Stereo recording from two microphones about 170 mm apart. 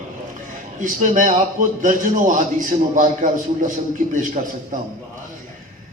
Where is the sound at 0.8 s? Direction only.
50° right (ahead or behind).